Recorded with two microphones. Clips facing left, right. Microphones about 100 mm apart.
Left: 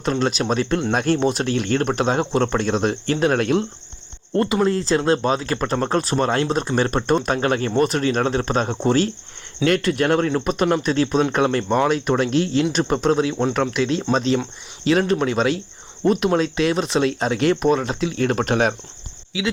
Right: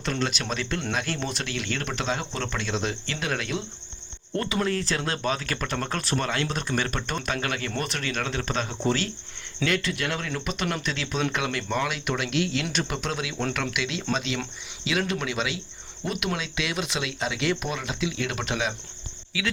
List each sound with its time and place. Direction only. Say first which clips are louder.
0.0 s speech: left 8 dB; 40° left (ahead or behind)
4.4 s speech: left 8 dB; 25° left (ahead or behind); by 18.7 s 50° left (ahead or behind)
19.3 s speech: left 6 dB; 20° left (ahead or behind)